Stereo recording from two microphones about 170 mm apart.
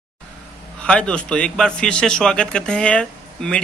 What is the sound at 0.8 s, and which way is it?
A man's voice, 5° left (ahead or behind).